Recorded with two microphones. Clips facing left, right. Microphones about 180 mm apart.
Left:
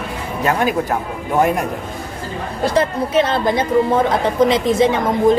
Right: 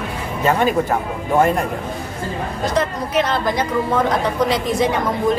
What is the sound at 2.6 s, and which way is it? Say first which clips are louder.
A woman's voice: left 4 dB; 30° left (ahead or behind).